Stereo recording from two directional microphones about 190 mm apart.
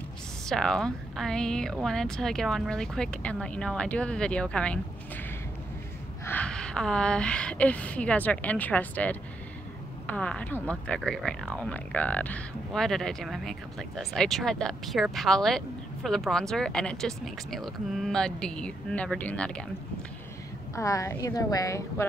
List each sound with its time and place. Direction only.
0.5 s speech: 5° left (ahead or behind)
6.2 s a woman's voice: 5° left (ahead or behind)
20.7 s a woman's voice: 15° left (ahead or behind)